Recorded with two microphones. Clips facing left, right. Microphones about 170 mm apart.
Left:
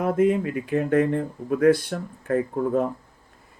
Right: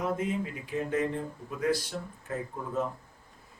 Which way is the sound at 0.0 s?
60° left (ahead or behind).